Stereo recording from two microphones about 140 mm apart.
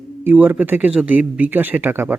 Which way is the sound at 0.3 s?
15° right (ahead or behind).